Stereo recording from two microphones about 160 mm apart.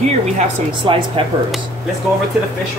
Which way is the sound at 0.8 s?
35° right (ahead or behind).